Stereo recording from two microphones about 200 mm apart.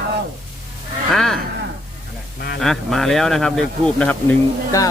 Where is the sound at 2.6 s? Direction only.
Centre (ahead or behind).